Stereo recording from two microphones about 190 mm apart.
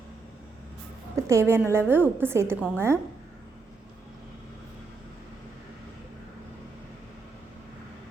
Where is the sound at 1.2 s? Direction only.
15° right (ahead or behind).